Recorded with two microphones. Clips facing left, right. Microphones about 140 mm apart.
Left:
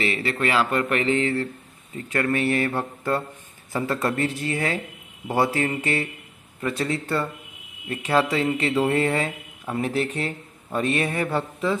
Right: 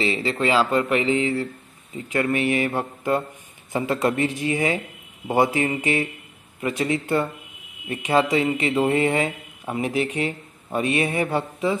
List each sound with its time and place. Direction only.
0.0 s a man's voice: 25° right (ahead or behind)
0.3 s speech: 15° right (ahead or behind)